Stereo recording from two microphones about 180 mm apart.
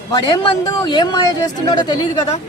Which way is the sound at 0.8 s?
25° left (ahead or behind).